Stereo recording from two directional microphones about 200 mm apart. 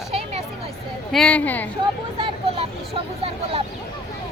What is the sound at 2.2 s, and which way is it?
Vehicle, 30° right (ahead or behind).